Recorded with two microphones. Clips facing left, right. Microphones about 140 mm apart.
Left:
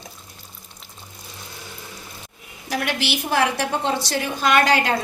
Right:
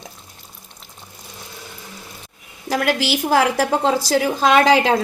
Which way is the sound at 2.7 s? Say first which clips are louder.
Right 5 dB; 90° right.